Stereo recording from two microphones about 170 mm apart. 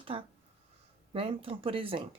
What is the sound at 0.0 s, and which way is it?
Speech, 30° right (ahead or behind).